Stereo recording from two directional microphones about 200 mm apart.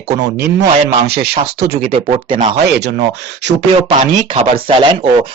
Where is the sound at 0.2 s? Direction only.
55° right (ahead or behind).